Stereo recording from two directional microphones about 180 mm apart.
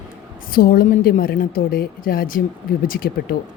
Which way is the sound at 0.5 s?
55° left (ahead or behind).